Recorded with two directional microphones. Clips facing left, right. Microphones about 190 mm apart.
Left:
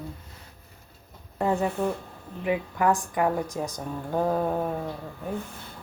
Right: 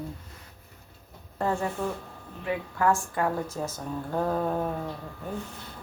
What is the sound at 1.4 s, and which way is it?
Speech, 15° left (ahead or behind).